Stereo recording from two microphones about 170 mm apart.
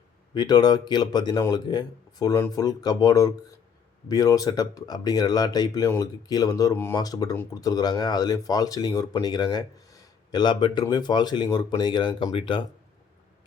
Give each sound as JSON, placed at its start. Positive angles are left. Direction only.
{"t": 0.3, "sound": "speech", "side_deg": 25}